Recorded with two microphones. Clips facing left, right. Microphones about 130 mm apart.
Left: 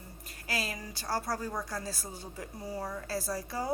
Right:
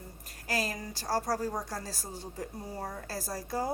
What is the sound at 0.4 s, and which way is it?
A woman's voice, 40° right (ahead or behind).